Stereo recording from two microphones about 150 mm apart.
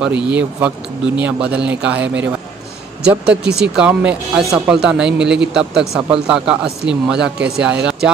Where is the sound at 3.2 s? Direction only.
90° right.